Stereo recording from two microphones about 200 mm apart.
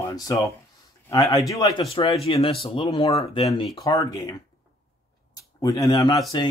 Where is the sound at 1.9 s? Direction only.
25° left (ahead or behind).